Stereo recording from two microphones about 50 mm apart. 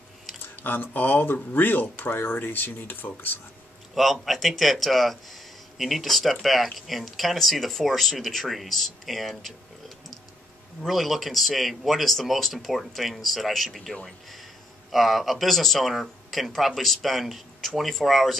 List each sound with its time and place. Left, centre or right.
0.7 s speech: left
3.9 s speech: centre